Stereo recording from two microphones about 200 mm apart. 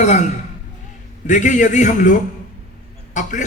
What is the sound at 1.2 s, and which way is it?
A man's voice, 40° left (ahead or behind).